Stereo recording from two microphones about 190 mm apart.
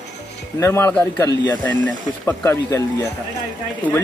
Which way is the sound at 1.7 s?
10° left (ahead or behind).